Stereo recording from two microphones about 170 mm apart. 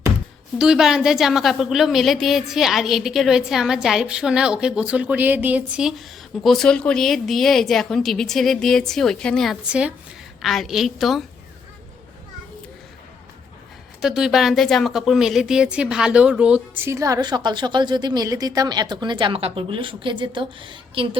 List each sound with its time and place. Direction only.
0.6 s a woman's voice: 5° right (ahead or behind)
14.0 s a woman's voice: 5° right (ahead or behind); by 21.2 s 30° right (ahead or behind)